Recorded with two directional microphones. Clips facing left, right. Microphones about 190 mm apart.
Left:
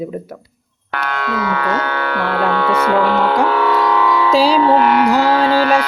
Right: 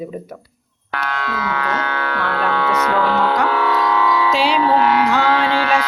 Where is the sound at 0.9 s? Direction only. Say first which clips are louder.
Left 2 dB; 55° left (ahead or behind).